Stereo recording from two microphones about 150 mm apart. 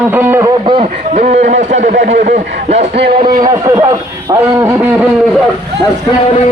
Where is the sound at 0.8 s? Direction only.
50° right (ahead or behind).